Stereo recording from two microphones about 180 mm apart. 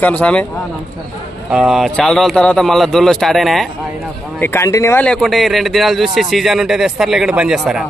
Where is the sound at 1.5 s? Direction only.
Centre (ahead or behind).